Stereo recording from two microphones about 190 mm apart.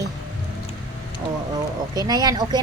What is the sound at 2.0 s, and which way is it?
Speech, 20° right (ahead or behind).